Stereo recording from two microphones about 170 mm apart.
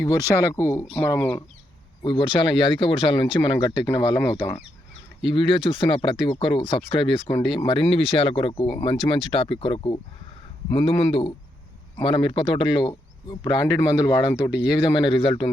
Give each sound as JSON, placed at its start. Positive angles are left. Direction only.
{"t": 0.0, "sound": "speech", "side_deg": 15}
{"t": 2.0, "sound": "speech", "side_deg": 25}